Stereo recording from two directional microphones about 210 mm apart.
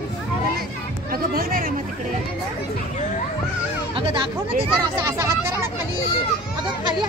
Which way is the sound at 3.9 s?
25° right (ahead or behind).